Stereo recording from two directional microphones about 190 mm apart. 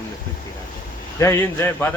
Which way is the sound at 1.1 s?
15° left (ahead or behind).